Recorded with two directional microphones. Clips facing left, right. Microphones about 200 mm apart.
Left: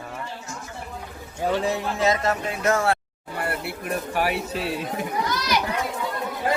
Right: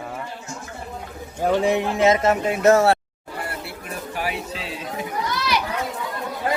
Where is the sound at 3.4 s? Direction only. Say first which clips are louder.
Left 5 dB; 60° left (ahead or behind).